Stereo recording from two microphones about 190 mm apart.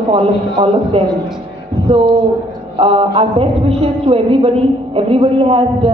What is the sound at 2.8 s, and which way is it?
A man's voice, 30° right (ahead or behind).